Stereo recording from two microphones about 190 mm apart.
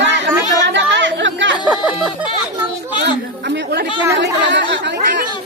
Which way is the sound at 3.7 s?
65° right (ahead or behind).